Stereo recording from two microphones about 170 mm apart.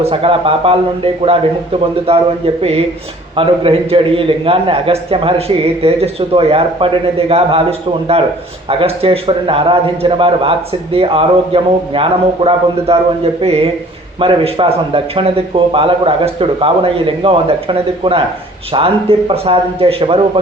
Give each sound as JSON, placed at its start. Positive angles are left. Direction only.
{"t": 0.0, "sound": "a man's voice", "side_deg": -35}